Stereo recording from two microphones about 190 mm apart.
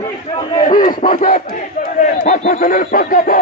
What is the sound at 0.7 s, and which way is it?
Speech, 45° left (ahead or behind).